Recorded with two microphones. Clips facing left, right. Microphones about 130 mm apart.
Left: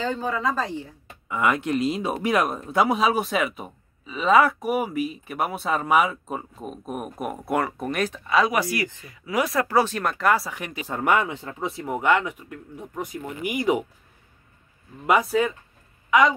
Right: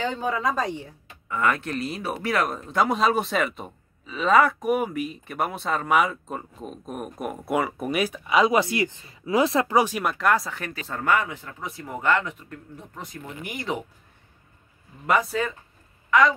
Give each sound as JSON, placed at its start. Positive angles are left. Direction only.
{"t": 0.0, "sound": "speech", "side_deg": -15}
{"t": 1.3, "sound": "speech", "side_deg": 15}
{"t": 8.5, "sound": "speech", "side_deg": -25}
{"t": 10.6, "sound": "speech", "side_deg": 15}
{"t": 15.0, "sound": "speech", "side_deg": 5}